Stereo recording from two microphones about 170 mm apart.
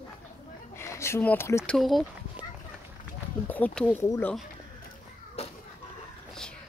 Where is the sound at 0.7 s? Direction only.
15° left (ahead or behind).